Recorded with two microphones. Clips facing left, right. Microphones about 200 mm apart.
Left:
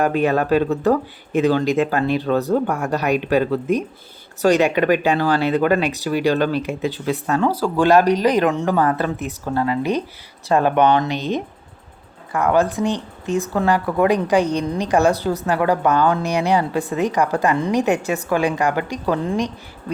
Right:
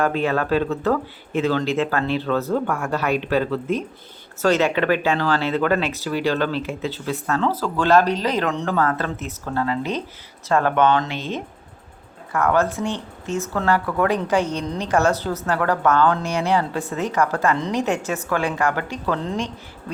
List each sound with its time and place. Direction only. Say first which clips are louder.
0.0 s speech: left 3 dB; 15° left (ahead or behind)